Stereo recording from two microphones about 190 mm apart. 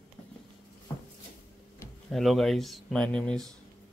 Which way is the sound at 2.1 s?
Centre (ahead or behind).